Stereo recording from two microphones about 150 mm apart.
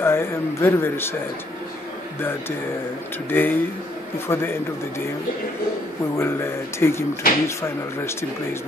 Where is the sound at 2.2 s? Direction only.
15° left (ahead or behind).